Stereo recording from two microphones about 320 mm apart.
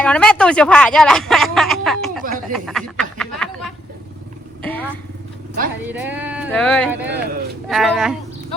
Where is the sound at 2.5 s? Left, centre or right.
Centre.